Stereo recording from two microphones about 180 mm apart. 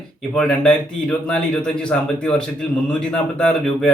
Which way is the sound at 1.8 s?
5° left (ahead or behind).